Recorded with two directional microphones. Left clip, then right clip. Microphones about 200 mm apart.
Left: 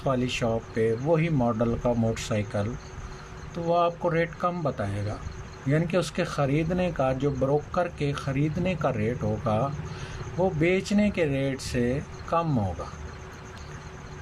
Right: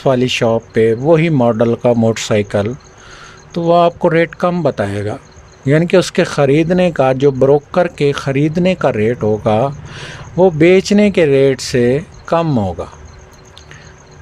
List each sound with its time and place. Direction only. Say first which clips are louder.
0.0 s speech: right 14 dB; 50° right (ahead or behind)